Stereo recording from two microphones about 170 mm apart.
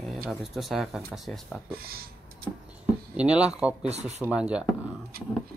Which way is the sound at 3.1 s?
5° right (ahead or behind).